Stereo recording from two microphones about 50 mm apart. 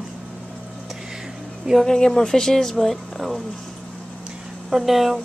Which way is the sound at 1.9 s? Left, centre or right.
Centre.